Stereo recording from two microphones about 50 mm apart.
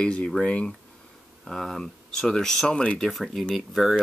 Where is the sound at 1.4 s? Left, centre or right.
Centre.